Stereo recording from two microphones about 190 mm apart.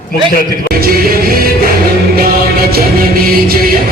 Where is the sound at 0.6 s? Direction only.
50° right (ahead or behind).